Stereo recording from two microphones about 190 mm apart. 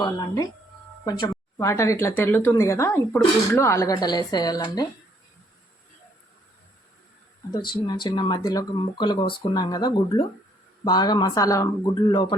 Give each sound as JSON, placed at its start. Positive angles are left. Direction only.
{"t": 0.0, "sound": "speech", "side_deg": 20}
{"t": 7.5, "sound": "speech", "side_deg": 20}